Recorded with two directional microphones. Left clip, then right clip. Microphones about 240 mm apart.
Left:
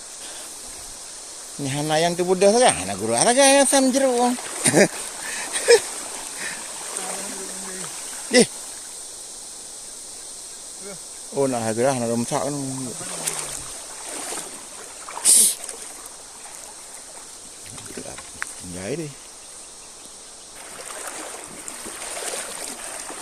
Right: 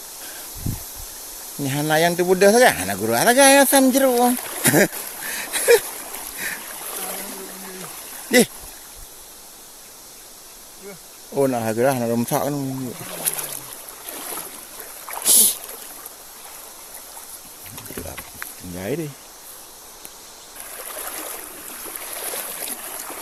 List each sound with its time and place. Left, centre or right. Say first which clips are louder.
1.6 s speech: right 2 dB; centre
5.3 s a sound: even; right
6.9 s stream: even; centre
8.3 s speech: even; right
11.3 s speech: right 2 dB; centre
13.1 s boat: left 1 dB; centre
15.2 s a sound: even; centre
18.8 s a sound: right 3 dB; centre
22.3 s boat: even; centre